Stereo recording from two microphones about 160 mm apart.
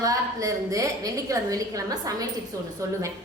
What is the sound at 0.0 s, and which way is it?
A woman's voice, 20° right (ahead or behind).